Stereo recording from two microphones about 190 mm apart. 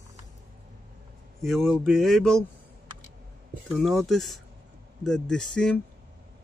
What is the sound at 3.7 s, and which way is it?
Speech, centre (ahead or behind).